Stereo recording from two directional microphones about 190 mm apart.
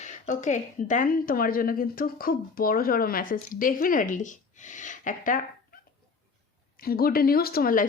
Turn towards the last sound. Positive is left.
turn(degrees=50)  # may be behind; listen again after turning